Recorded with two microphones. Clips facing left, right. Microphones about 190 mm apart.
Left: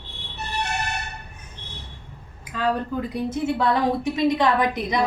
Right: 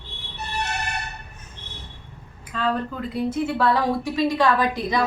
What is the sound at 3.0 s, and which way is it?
A woman's voice, 20° left (ahead or behind).